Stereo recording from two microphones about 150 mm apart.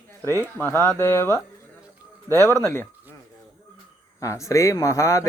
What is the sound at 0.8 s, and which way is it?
Speech, 15° left (ahead or behind).